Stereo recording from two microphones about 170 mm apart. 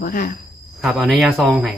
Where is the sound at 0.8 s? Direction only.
Centre (ahead or behind).